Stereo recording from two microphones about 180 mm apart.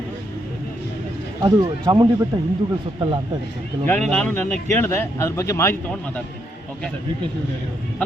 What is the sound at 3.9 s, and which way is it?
A man's voice, 5° left (ahead or behind).